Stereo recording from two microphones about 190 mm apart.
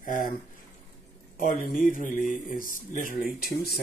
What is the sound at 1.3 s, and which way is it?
Speech, 45° left (ahead or behind).